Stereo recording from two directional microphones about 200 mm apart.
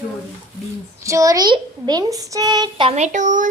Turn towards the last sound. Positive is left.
turn(degrees=-40)  # may be behind; listen again after turning